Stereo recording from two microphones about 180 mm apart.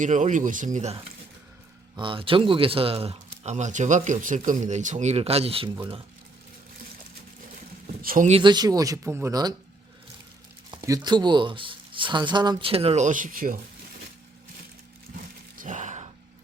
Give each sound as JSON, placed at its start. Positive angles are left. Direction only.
{"t": 0.0, "sound": "speech", "side_deg": -45}
{"t": 8.0, "sound": "speech", "side_deg": -50}
{"t": 8.3, "sound": "speech", "side_deg": -25}
{"t": 10.7, "sound": "speech", "side_deg": -20}
{"t": 15.5, "sound": "gasp", "side_deg": -45}